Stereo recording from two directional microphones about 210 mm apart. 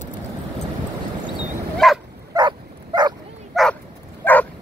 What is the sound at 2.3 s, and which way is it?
Dog, 20° right (ahead or behind).